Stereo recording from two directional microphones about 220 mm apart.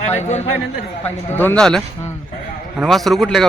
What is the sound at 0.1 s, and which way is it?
Speech, 30° left (ahead or behind).